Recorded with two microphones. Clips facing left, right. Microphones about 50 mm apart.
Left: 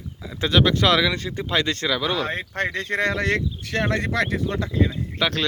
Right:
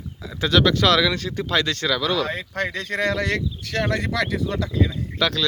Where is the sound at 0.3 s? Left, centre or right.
Left.